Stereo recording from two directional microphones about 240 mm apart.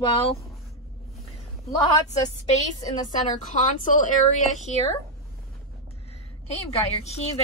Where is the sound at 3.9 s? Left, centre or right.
Left.